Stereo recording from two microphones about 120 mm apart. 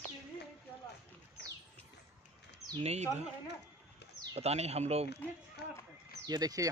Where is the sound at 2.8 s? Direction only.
65° right (ahead or behind).